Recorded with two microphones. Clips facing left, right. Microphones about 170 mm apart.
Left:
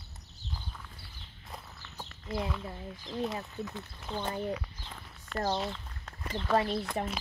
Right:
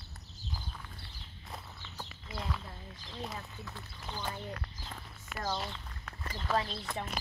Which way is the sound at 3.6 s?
20° left (ahead or behind).